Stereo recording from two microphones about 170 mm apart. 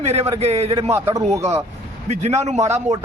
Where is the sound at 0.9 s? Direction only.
15° right (ahead or behind).